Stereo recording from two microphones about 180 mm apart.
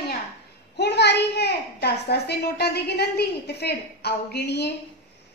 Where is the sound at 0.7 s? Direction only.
70° left (ahead or behind).